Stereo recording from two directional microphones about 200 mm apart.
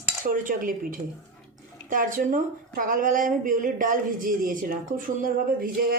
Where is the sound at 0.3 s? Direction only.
45° right (ahead or behind).